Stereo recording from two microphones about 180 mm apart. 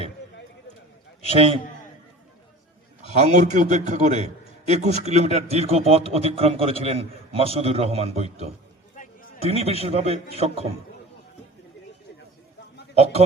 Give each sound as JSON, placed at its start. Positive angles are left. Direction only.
{"t": 1.2, "sound": "a man's voice", "side_deg": -30}
{"t": 3.1, "sound": "a man's voice", "side_deg": -40}
{"t": 9.0, "sound": "a sound", "side_deg": 45}
{"t": 9.4, "sound": "a man's voice", "side_deg": -35}
{"t": 12.9, "sound": "speech", "side_deg": -35}